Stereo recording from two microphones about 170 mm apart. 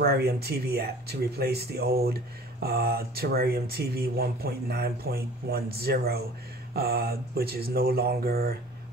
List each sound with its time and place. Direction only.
0.0 s speech: 65° right (ahead or behind)